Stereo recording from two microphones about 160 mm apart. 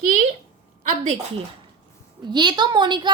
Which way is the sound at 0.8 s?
50° right (ahead or behind).